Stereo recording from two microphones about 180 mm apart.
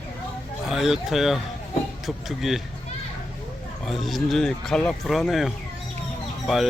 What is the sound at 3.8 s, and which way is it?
Speech, centre (ahead or behind).